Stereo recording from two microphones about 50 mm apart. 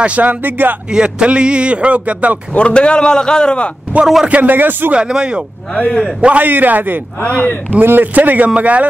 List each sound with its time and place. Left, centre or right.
0.0 s speech: right
0.9 s a man's voice: centre
2.5 s a man's voice: left
4.0 s a man's voice: centre
4.3 s speech: right
4.9 s a man's voice: centre
5.8 s speech: left
6.4 s speech: right
7.2 s speech: left
7.8 s a man's voice: right